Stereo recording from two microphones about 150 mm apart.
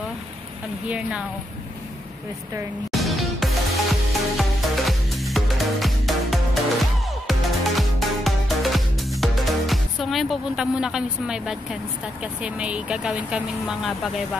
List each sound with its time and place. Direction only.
0.8 s a woman's voice: 5° right (ahead or behind)
2.9 s music: centre (ahead or behind)